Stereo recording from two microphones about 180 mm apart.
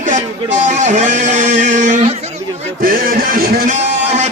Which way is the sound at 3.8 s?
40° right (ahead or behind).